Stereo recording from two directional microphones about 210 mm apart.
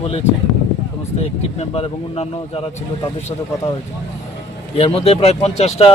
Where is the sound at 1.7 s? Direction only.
30° left (ahead or behind).